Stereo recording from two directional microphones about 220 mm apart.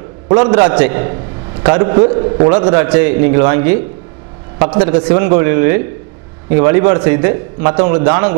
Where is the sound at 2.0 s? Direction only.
25° right (ahead or behind).